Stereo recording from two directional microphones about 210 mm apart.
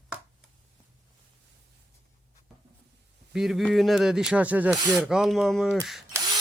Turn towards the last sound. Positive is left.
turn(degrees=-15)  # may be behind; listen again after turning